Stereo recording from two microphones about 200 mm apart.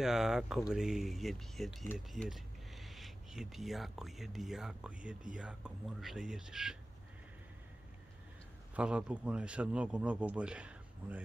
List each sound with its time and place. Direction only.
0.0 s speech: centre (ahead or behind)
8.7 s speech: 5° right (ahead or behind)